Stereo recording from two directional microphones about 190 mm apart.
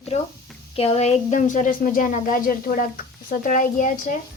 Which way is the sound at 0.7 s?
30° left (ahead or behind).